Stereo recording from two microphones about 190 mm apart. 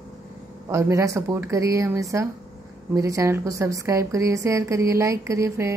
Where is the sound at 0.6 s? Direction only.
15° right (ahead or behind).